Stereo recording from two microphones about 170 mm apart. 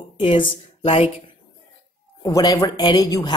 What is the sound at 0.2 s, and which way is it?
Speech, 35° left (ahead or behind).